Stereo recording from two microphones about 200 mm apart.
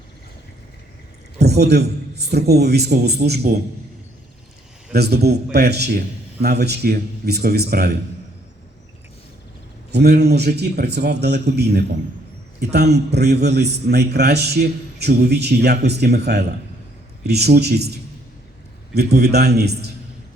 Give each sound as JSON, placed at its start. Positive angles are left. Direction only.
{"t": 1.4, "sound": "a man's voice", "side_deg": -55}
{"t": 4.9, "sound": "a man's voice", "side_deg": -55}
{"t": 9.9, "sound": "a man's voice", "side_deg": -55}